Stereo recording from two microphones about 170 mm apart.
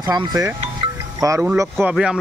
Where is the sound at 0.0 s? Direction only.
20° right (ahead or behind).